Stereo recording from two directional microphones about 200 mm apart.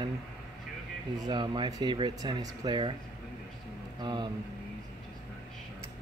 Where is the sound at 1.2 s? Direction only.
20° right (ahead or behind).